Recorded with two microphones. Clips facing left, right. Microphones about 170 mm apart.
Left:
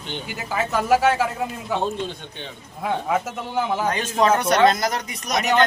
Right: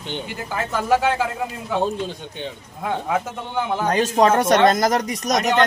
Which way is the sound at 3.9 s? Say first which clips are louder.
Right 5 dB; 40° right (ahead or behind).